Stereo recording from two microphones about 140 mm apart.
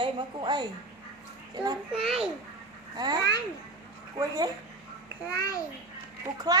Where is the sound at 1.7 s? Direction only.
40° right (ahead or behind).